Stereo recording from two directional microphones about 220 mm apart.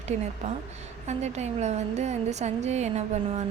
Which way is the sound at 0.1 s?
30° right (ahead or behind).